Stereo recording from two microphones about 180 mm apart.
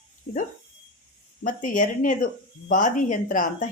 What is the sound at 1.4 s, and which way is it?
A woman's voice, 45° left (ahead or behind).